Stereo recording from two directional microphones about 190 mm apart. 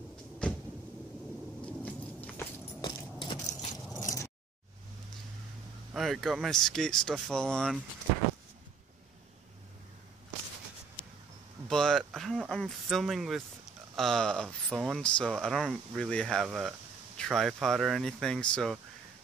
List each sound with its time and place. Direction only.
1.7 s a sound: 5° left (ahead or behind)
2.8 s crushing: 25° left (ahead or behind)
4.0 s keys jangling: 15° left (ahead or behind)
5.9 s speech: centre (ahead or behind)
11.6 s a sound: centre (ahead or behind)
13.9 s speech: centre (ahead or behind)